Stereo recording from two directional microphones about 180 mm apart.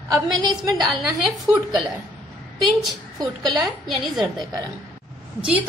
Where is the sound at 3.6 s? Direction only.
Centre (ahead or behind).